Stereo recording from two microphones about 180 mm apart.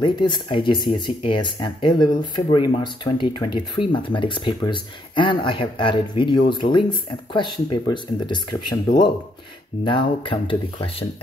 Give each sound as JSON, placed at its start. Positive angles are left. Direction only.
{"t": 0.0, "sound": "speech", "side_deg": 25}